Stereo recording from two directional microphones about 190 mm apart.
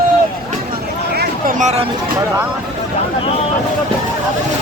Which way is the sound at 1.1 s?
50° right (ahead or behind).